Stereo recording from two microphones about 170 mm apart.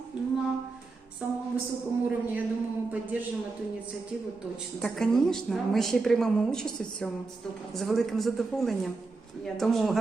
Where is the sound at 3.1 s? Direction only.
10° right (ahead or behind).